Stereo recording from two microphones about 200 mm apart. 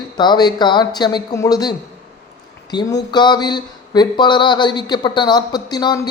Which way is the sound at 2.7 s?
20° left (ahead or behind).